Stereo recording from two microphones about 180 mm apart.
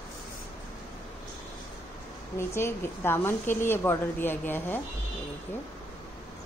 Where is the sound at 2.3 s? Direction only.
15° left (ahead or behind).